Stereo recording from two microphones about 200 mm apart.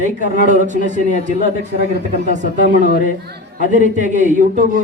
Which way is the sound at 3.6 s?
40° right (ahead or behind).